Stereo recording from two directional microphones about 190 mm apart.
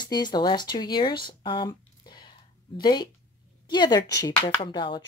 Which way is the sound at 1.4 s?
25° left (ahead or behind).